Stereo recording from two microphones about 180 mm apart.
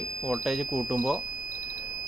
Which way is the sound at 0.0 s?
5° left (ahead or behind).